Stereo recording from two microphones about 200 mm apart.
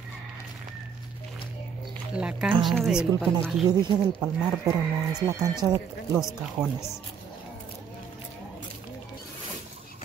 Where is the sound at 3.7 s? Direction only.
20° right (ahead or behind).